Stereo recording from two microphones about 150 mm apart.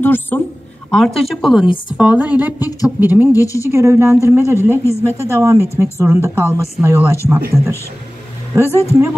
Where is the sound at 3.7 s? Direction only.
15° right (ahead or behind).